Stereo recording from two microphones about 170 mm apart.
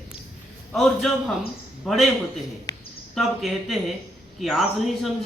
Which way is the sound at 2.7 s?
25° left (ahead or behind).